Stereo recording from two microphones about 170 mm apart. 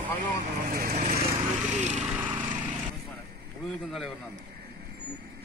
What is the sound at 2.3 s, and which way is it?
Lawn mower, 25° right (ahead or behind).